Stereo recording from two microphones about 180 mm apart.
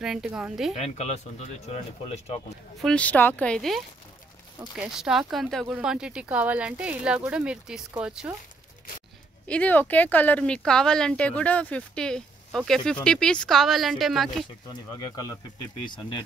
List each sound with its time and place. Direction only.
0.0 s speech: 5° right (ahead or behind)
0.7 s speech: 40° left (ahead or behind)
2.8 s speech: 5° left (ahead or behind)
9.5 s speech: 10° left (ahead or behind)
14.7 s speech: 20° left (ahead or behind)